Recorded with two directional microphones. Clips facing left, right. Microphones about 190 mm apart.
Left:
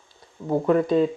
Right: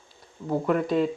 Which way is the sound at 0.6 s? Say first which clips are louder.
Left 5 dB; 25° left (ahead or behind).